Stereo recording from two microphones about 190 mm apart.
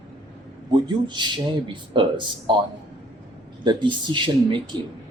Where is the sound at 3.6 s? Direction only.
25° right (ahead or behind).